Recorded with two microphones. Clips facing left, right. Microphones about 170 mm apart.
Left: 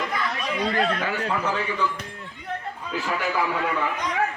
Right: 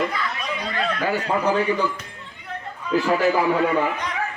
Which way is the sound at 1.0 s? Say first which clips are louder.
Right 5 dB; 35° right (ahead or behind).